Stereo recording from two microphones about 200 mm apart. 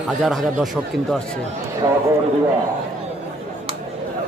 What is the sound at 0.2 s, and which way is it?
A man's voice, centre (ahead or behind).